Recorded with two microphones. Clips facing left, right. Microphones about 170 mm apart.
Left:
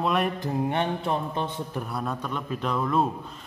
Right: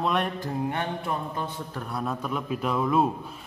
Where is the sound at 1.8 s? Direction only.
Centre (ahead or behind).